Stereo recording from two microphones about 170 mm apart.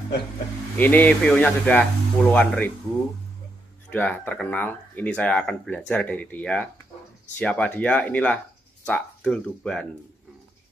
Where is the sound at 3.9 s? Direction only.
10° left (ahead or behind).